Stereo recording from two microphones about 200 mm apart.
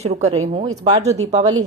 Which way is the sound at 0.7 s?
20° right (ahead or behind).